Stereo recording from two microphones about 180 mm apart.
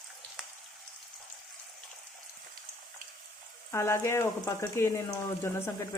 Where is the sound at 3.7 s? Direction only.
15° left (ahead or behind).